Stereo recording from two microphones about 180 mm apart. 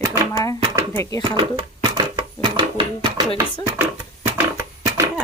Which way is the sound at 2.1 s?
25° right (ahead or behind).